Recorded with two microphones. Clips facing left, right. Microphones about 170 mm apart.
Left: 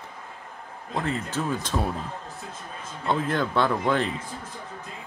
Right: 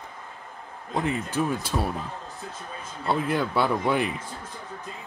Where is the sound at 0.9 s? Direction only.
15° right (ahead or behind).